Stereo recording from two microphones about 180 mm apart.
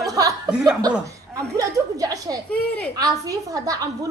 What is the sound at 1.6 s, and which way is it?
Dishes, 20° right (ahead or behind).